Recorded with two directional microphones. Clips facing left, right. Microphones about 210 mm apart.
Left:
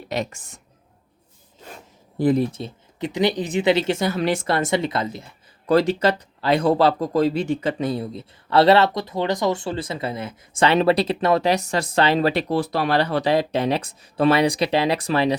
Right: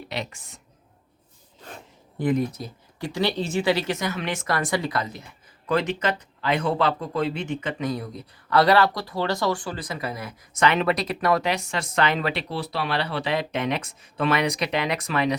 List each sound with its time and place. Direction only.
0.1 s a woman's voice: 45° left (ahead or behind)
2.1 s speech: 35° left (ahead or behind)
11.5 s speech: 40° left (ahead or behind)